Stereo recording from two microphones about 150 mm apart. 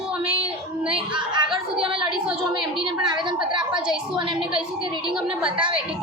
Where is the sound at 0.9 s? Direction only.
30° right (ahead or behind).